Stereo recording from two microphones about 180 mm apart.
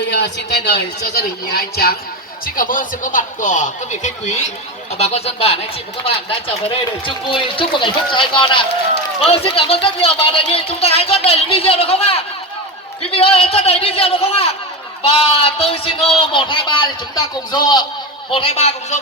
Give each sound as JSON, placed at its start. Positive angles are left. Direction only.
{"t": 0.1, "sound": "a woman's voice", "side_deg": 70}
{"t": 2.6, "sound": "a man's voice", "side_deg": 50}
{"t": 7.0, "sound": "a man's voice", "side_deg": 30}